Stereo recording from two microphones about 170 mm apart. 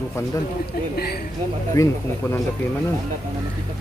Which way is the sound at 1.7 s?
20° left (ahead or behind).